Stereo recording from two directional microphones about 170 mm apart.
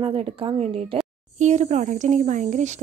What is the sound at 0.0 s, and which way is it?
Speech, 30° right (ahead or behind).